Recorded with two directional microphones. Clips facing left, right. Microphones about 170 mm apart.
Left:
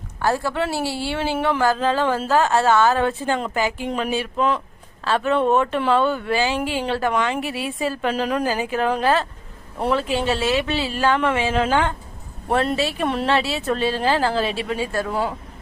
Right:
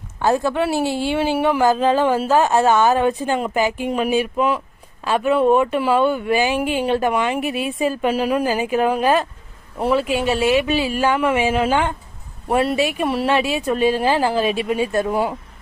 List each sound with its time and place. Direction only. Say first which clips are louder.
0.2 s a woman's voice: right 4 dB; 20° right (ahead or behind)